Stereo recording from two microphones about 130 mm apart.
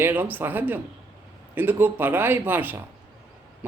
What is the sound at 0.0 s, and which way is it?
A man's voice, 15° right (ahead or behind).